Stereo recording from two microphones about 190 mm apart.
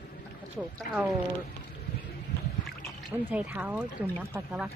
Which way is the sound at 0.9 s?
45° left (ahead or behind).